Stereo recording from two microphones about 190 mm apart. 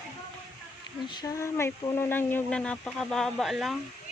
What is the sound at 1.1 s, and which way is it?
Speech, 20° left (ahead or behind).